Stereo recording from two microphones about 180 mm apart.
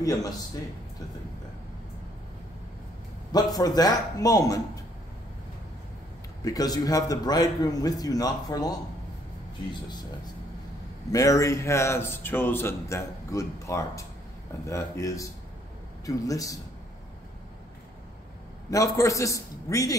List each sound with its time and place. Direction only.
3.3 s a man's voice: 20° left (ahead or behind)
6.4 s a man's voice: 20° left (ahead or behind)
11.1 s a man's voice: 20° left (ahead or behind)
18.7 s a man's voice: 20° left (ahead or behind)